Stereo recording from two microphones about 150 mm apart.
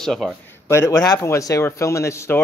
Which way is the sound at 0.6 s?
20° left (ahead or behind).